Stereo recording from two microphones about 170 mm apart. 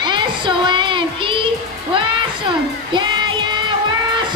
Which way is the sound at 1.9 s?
30° right (ahead or behind).